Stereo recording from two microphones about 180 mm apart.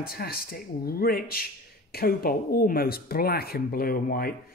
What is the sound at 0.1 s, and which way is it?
Speech, 60° left (ahead or behind).